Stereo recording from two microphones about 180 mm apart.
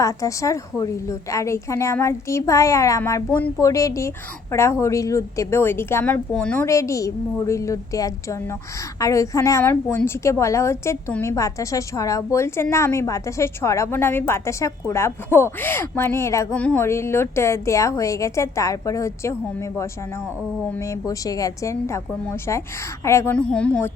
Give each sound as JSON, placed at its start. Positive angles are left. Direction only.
{"t": 0.0, "sound": "a woman's voice", "side_deg": 15}